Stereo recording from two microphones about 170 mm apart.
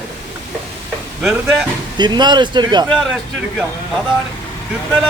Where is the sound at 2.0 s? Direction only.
25° right (ahead or behind).